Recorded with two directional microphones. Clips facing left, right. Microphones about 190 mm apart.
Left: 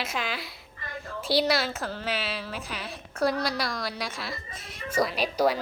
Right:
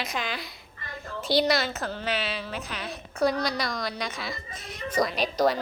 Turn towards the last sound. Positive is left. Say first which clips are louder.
# even
turn(degrees=10)  # may be behind; listen again after turning